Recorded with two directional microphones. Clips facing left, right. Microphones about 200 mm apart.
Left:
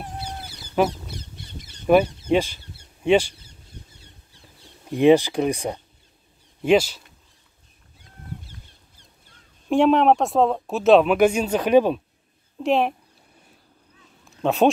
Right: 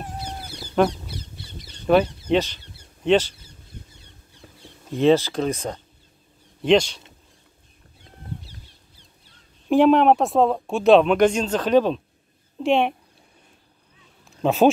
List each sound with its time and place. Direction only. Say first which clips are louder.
0.0 s a sound: even; 5° left (ahead or behind)
1.9 s insect: left 1 dB; 10° left (ahead or behind)
4.9 s speech: left 2 dB; 15° left (ahead or behind)
8.4 s goose: even; 50° left (ahead or behind)
9.7 s speech: right 1 dB; centre (ahead or behind)
12.5 s speech: right 1 dB; centre (ahead or behind)
14.2 s a sound: right 1 dB; centre (ahead or behind)